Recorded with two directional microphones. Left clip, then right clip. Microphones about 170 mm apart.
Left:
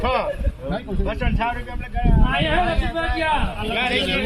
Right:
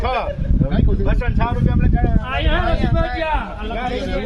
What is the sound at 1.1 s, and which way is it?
Speech, 20° right (ahead or behind).